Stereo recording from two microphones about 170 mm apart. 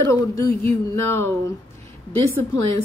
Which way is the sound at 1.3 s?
20° left (ahead or behind).